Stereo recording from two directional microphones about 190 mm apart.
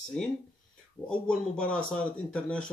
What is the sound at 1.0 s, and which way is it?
A man's voice, 5° left (ahead or behind).